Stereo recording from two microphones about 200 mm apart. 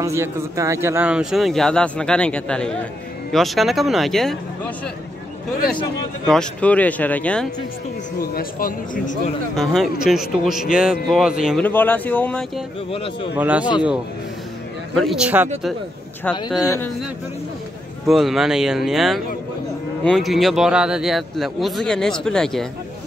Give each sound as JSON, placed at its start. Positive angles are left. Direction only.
{"t": 0.0, "sound": "speech", "side_deg": -15}
{"t": 6.2, "sound": "speech", "side_deg": 5}
{"t": 8.2, "sound": "a man's voice", "side_deg": 45}
{"t": 9.6, "sound": "speech", "side_deg": 0}
{"t": 11.6, "sound": "speech", "side_deg": 10}
{"t": 12.9, "sound": "a man's voice", "side_deg": 25}
{"t": 13.4, "sound": "speech", "side_deg": -5}
{"t": 15.0, "sound": "speech", "side_deg": 0}
{"t": 16.3, "sound": "speech", "side_deg": 5}
{"t": 18.0, "sound": "speech", "side_deg": 0}